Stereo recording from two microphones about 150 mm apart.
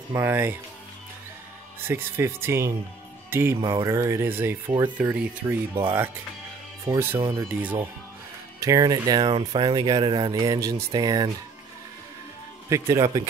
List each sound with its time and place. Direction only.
0.1 s speech: 15° right (ahead or behind)
1.9 s speech: 15° right (ahead or behind)
6.9 s speech: 15° right (ahead or behind)
12.6 s speech: 20° right (ahead or behind)